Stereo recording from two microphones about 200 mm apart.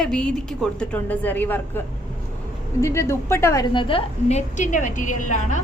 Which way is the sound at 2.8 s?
15° left (ahead or behind).